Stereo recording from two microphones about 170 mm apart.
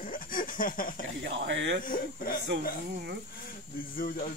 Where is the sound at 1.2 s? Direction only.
90° right.